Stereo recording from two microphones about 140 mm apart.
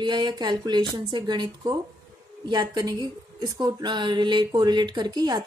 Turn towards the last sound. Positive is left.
turn(degrees=-30)  # may be behind; listen again after turning